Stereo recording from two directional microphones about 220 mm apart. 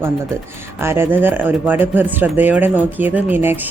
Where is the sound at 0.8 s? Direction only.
10° right (ahead or behind).